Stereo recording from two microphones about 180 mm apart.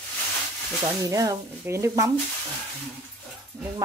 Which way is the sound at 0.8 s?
20° right (ahead or behind).